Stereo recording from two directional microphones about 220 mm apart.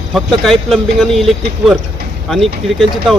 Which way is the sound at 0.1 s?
Centre (ahead or behind).